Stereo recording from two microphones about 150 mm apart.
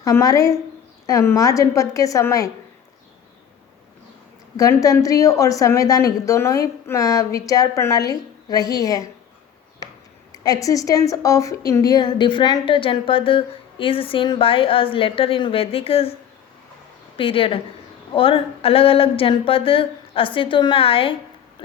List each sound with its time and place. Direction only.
0.0 s a woman's voice: 20° left (ahead or behind)
4.5 s a woman's voice: 20° left (ahead or behind)
10.3 s a woman's voice: 25° left (ahead or behind); by 16.1 s 40° left (ahead or behind)
17.2 s a woman's voice: 35° left (ahead or behind)